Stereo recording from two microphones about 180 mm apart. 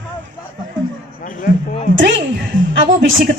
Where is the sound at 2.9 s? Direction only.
90° right.